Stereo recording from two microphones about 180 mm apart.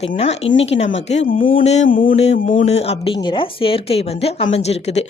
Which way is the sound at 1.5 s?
40° left (ahead or behind).